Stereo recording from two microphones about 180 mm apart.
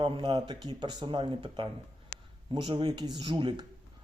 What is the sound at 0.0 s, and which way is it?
Speech, 25° right (ahead or behind).